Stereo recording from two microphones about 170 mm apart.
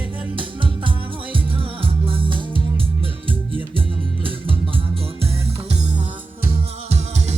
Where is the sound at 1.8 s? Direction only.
30° right (ahead or behind).